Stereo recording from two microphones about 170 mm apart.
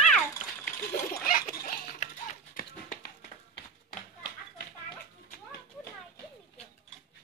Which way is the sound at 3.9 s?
65° left (ahead or behind).